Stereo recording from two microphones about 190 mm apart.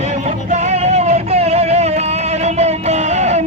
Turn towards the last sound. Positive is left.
turn(degrees=-35)  # may be behind; listen again after turning